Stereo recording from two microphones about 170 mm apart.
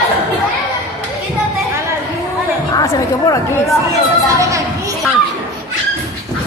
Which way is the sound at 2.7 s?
20° left (ahead or behind).